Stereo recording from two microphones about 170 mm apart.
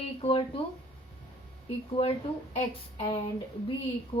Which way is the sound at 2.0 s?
35° left (ahead or behind).